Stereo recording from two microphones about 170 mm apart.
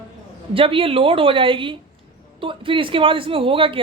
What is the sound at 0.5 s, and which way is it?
Speech, 30° right (ahead or behind).